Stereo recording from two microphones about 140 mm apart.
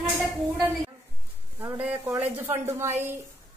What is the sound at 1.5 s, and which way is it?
A woman's voice, 15° right (ahead or behind).